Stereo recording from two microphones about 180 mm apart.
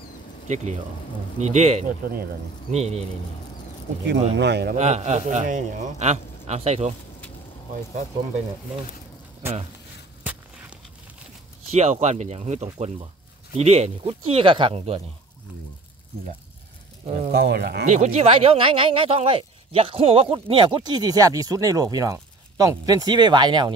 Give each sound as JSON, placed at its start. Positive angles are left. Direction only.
{"t": 1.4, "sound": "a man's voice", "side_deg": -40}
{"t": 4.0, "sound": "speech", "side_deg": -70}
{"t": 4.7, "sound": "a man's voice", "side_deg": -40}
{"t": 11.7, "sound": "a man's voice", "side_deg": -40}
{"t": 17.3, "sound": "speech", "side_deg": -65}
{"t": 17.8, "sound": "speech", "side_deg": -40}